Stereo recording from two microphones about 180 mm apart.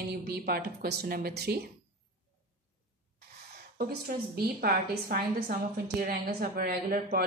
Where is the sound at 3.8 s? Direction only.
65° right (ahead or behind).